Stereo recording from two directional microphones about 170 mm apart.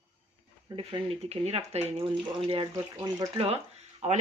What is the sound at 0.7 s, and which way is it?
Speech, 35° right (ahead or behind).